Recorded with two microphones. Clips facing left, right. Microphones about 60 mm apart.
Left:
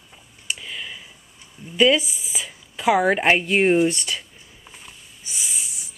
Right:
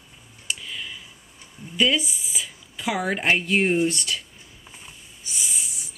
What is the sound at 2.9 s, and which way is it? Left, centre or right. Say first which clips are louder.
Speech: left 4 dB; left.